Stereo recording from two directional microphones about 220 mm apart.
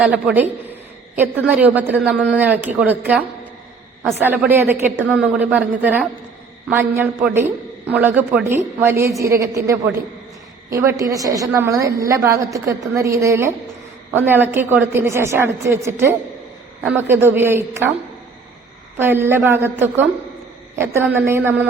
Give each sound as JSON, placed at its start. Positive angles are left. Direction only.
{"t": 0.0, "sound": "a man's voice", "side_deg": -5}
{"t": 18.9, "sound": "a man's voice", "side_deg": -10}